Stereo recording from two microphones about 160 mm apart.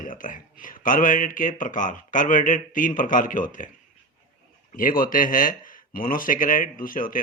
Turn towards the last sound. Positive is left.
turn(degrees=60)  # may be behind; listen again after turning